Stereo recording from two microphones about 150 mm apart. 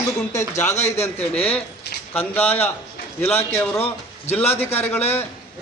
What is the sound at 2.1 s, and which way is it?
A man's voice, 10° left (ahead or behind).